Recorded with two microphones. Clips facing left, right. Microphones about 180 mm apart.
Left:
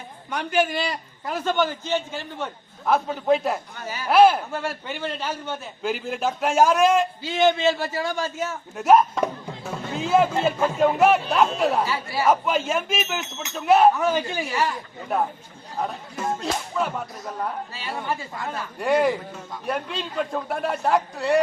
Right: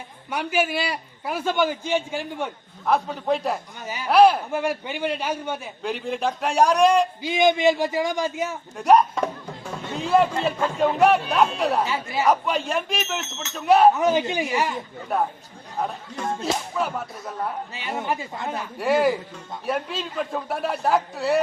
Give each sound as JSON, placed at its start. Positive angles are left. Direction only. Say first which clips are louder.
{"t": 0.3, "sound": "a man's voice", "louder": "left 1 dB", "side_deg": -10}
{"t": 2.8, "sound": "speech", "louder": "left 1 dB", "side_deg": 0}
{"t": 4.5, "sound": "a man's voice", "louder": "right 4 dB", "side_deg": -15}
{"t": 5.8, "sound": "speech", "louder": "even", "side_deg": 0}
{"t": 7.2, "sound": "a man's voice", "louder": "right 1 dB", "side_deg": -15}
{"t": 8.7, "sound": "speech", "louder": "even", "side_deg": 0}
{"t": 11.9, "sound": "a woman's voice", "louder": "right 1 dB", "side_deg": -20}
{"t": 12.2, "sound": "speech", "louder": "left 1 dB", "side_deg": 0}
{"t": 13.9, "sound": "a woman's voice", "louder": "right 2 dB", "side_deg": -20}
{"t": 15.1, "sound": "speech", "louder": "even", "side_deg": 0}
{"t": 17.7, "sound": "a woman's voice", "louder": "right 5 dB", "side_deg": -20}
{"t": 18.8, "sound": "speech", "louder": "even", "side_deg": 0}